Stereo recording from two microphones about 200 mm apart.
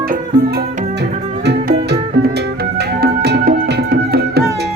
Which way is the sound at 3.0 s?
50° right (ahead or behind).